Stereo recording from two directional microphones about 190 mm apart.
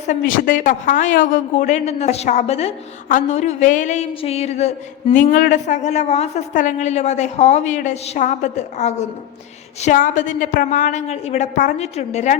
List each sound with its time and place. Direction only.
0.1 s a woman's voice: 45° left (ahead or behind)